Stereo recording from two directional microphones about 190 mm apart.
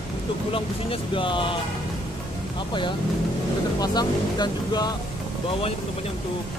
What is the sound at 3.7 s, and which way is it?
Speech, 20° left (ahead or behind).